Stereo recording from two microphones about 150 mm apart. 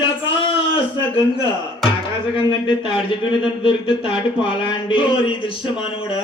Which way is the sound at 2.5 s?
35° left (ahead or behind).